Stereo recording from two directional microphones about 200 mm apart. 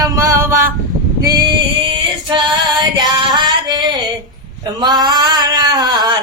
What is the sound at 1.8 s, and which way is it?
Female singing, 25° right (ahead or behind).